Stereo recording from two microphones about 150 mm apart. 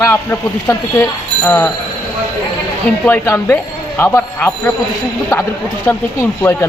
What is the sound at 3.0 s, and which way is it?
Speech, 15° left (ahead or behind).